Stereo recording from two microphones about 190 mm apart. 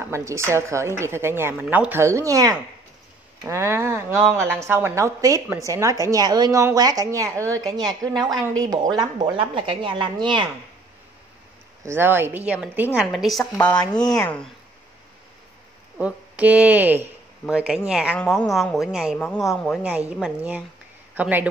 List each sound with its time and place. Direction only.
0.0 s a woman's voice: 15° right (ahead or behind)
11.8 s a woman's voice: 10° right (ahead or behind); by 14.5 s 5° left (ahead or behind)
16.0 s a woman's voice: 5° right (ahead or behind)